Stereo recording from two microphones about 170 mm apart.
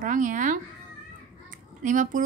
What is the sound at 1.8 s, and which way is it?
Speech, 50° right (ahead or behind).